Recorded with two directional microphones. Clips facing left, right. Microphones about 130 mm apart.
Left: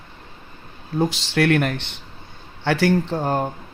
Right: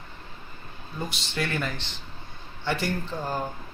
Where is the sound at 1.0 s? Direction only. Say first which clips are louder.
Left 11 dB; 90° left; by 2.0 s 65° left (ahead or behind).